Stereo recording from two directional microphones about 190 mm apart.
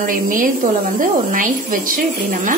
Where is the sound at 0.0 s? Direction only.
45° right (ahead or behind).